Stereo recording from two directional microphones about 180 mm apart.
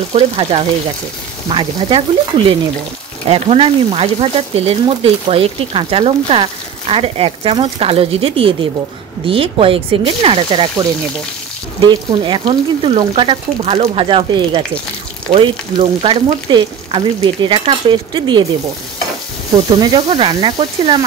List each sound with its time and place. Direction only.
0.1 s speech: 35° right (ahead or behind)
1.5 s frying: 30° right (ahead or behind)
3.3 s speech: 30° right (ahead or behind)
9.2 s frying: 30° right (ahead or behind)
19.5 s frying: 25° right (ahead or behind)